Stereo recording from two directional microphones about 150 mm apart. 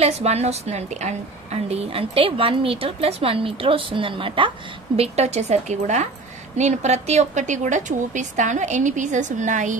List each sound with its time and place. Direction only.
0.0 s a woman's voice: 45° right (ahead or behind)